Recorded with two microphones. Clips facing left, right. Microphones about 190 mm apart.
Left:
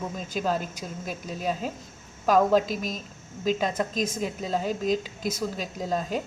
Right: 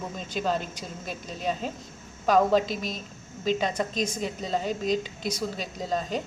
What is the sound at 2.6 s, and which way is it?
Speech, 45° left (ahead or behind).